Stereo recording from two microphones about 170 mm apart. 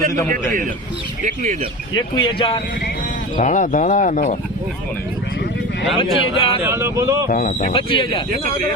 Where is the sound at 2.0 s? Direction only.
30° left (ahead or behind).